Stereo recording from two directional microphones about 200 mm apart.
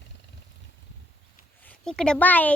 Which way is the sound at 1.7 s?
5° left (ahead or behind).